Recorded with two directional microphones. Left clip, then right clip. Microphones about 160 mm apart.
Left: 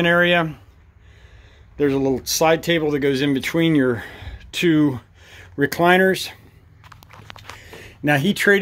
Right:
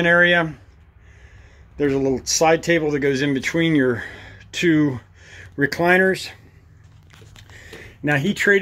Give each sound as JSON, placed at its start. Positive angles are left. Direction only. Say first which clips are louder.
{"t": 0.0, "sound": "speech", "louder": "right 1 dB", "side_deg": 15}
{"t": 1.8, "sound": "speech", "louder": "left 1 dB", "side_deg": 15}
{"t": 7.6, "sound": "a sound", "louder": "left 2 dB", "side_deg": 25}